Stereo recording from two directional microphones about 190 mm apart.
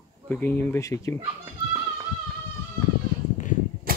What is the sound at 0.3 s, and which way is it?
Speech, 10° left (ahead or behind).